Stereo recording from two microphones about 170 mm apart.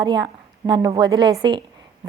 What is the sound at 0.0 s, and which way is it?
A woman's voice, 25° right (ahead or behind).